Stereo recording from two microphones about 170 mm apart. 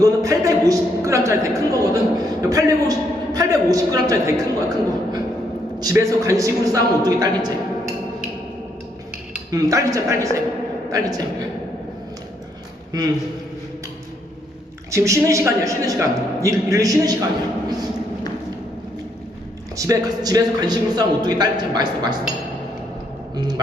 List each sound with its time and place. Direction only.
0.0 s a sound: 20° right (ahead or behind)
2.4 s a woman's voice: 20° right (ahead or behind)
9.5 s a man's voice: 20° right (ahead or behind)
14.8 s a man's voice: 20° right (ahead or behind)
19.7 s a man's voice: 20° right (ahead or behind)
23.3 s speech: 25° right (ahead or behind)